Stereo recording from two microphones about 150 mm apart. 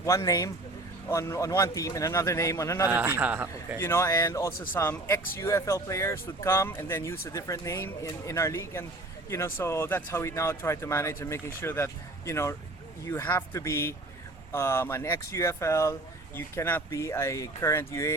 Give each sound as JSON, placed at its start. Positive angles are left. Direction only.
{"t": 0.0, "sound": "speech", "side_deg": 20}
{"t": 2.9, "sound": "a man's voice", "side_deg": -15}
{"t": 3.8, "sound": "speech", "side_deg": 15}